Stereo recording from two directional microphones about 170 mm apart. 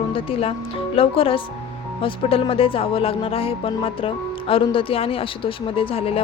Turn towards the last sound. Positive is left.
turn(degrees=35)  # may be behind; listen again after turning